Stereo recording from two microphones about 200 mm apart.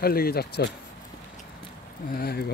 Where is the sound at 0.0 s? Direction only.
50° left (ahead or behind).